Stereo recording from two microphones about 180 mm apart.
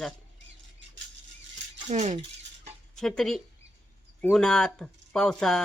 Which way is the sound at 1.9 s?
40° right (ahead or behind).